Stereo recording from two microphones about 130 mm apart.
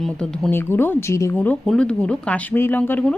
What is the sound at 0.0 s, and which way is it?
Speech, 5° left (ahead or behind).